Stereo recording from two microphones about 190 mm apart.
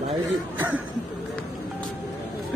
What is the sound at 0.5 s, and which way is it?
Speech, 10° right (ahead or behind).